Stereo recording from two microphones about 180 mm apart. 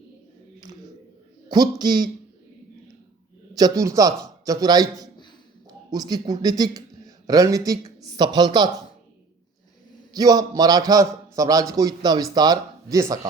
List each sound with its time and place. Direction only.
1.5 s a man's voice: 20° right (ahead or behind)
3.5 s a man's voice: 20° right (ahead or behind)
10.1 s a man's voice: 20° right (ahead or behind)